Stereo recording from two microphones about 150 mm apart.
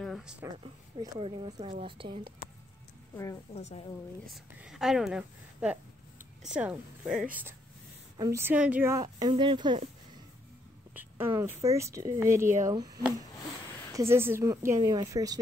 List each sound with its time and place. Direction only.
0.0 s a sound: 5° right (ahead or behind)
1.2 s a woman's voice: 40° right (ahead or behind)
3.5 s a woman's voice: 45° left (ahead or behind)
4.6 s a woman's voice: 5° right (ahead or behind)
8.2 s a woman's voice: 20° right (ahead or behind)
9.3 s a woman's voice: 35° right (ahead or behind)
11.0 s speech: 15° right (ahead or behind)